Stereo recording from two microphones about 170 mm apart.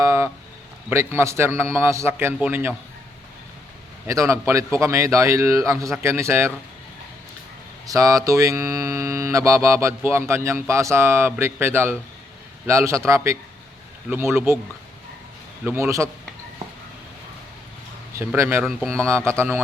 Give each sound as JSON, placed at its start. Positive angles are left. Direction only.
{"t": 0.0, "sound": "a sound", "side_deg": -15}
{"t": 0.9, "sound": "hum", "side_deg": -15}
{"t": 4.0, "sound": "hum", "side_deg": -15}
{"t": 7.9, "sound": "hum", "side_deg": -20}
{"t": 15.6, "sound": "hum", "side_deg": -15}
{"t": 18.1, "sound": "hum", "side_deg": -15}